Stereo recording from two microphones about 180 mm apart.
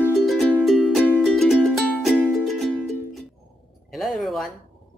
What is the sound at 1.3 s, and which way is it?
Music, centre (ahead or behind).